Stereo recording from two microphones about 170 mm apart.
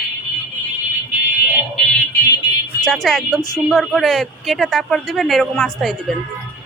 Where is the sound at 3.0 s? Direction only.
Centre (ahead or behind).